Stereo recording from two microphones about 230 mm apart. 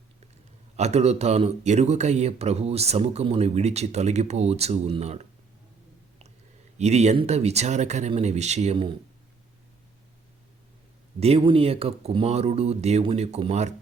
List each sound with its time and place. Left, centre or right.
0.8 s speech: right
6.7 s speech: right
11.2 s speech: right